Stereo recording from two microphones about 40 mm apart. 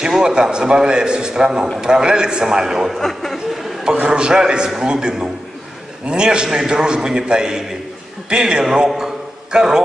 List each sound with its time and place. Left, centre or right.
0.2 s a man's voice: centre
3.0 s speech: centre
4.1 s a man's voice: centre
8.7 s a sound: centre